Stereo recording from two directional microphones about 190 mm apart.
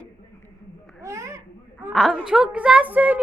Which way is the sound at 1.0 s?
15° right (ahead or behind).